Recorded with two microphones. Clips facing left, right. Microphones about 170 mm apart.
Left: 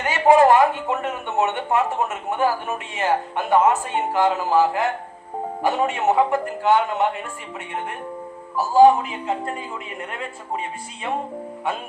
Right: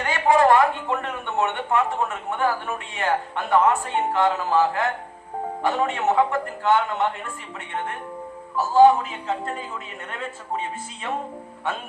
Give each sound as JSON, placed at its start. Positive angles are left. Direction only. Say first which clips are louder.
{"t": 0.0, "sound": "a man's voice", "louder": "left 4 dB", "side_deg": 20}
{"t": 8.7, "sound": "speech", "louder": "left 1 dB", "side_deg": 15}